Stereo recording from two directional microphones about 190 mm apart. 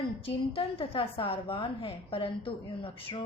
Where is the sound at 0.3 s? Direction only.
30° left (ahead or behind).